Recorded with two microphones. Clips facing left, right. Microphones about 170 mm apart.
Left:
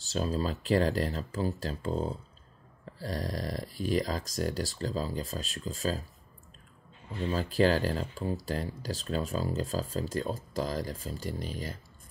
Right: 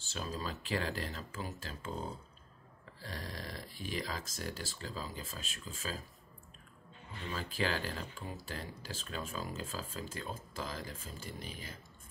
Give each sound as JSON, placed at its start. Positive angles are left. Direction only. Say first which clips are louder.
{"t": 0.0, "sound": "speech", "louder": "left 10 dB", "side_deg": 40}
{"t": 7.2, "sound": "speech", "louder": "left 10 dB", "side_deg": 40}